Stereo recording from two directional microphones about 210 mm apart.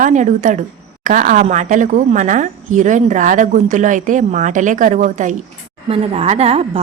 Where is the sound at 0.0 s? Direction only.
35° right (ahead or behind).